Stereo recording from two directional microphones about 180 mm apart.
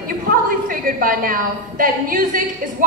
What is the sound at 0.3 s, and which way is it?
A woman's voice, 50° right (ahead or behind).